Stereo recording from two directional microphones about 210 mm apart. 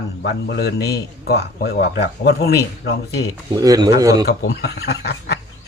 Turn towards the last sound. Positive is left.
turn(degrees=50)  # may be behind; listen again after turning